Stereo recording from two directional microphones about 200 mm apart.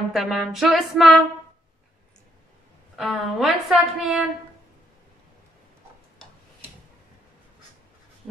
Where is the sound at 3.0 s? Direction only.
Centre (ahead or behind).